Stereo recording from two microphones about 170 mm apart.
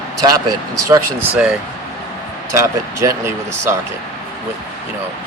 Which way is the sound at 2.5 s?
20° right (ahead or behind).